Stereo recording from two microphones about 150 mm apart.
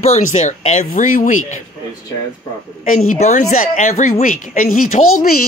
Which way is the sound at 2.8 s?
55° left (ahead or behind).